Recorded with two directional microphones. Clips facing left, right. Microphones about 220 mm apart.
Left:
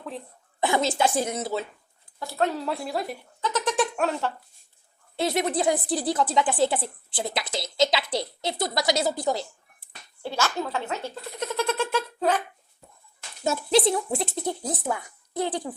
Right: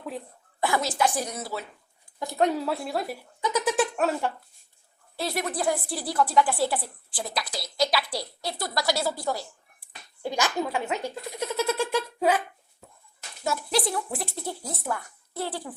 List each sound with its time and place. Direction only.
0.6 s a woman's voice: 25° left (ahead or behind)
2.1 s speech: 15° right (ahead or behind); by 3.2 s centre (ahead or behind)
3.4 s a sound: 10° right (ahead or behind)
5.1 s a woman's voice: 20° left (ahead or behind)
10.2 s speech: 15° right (ahead or behind)
13.4 s a woman's voice: 25° left (ahead or behind)